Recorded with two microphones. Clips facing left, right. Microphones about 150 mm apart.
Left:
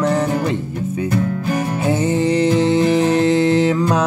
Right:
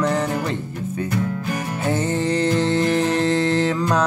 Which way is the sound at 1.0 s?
30° left (ahead or behind).